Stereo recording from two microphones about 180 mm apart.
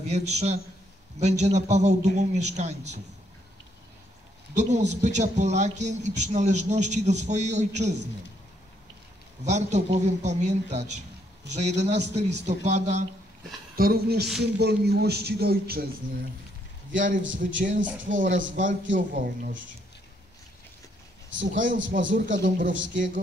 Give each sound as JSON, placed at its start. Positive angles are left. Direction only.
{"t": 0.1, "sound": "a man's voice", "side_deg": -35}
{"t": 4.6, "sound": "a man's voice", "side_deg": -40}
{"t": 9.4, "sound": "a man's voice", "side_deg": -40}
{"t": 13.7, "sound": "speech", "side_deg": -60}
{"t": 16.9, "sound": "a man's voice", "side_deg": -45}
{"t": 21.4, "sound": "a man's voice", "side_deg": -45}